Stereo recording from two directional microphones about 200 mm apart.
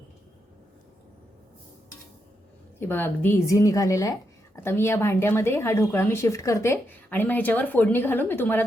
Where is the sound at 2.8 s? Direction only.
10° left (ahead or behind).